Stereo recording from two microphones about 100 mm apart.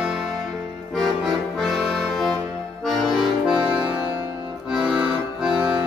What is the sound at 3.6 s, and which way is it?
Music, 10° right (ahead or behind).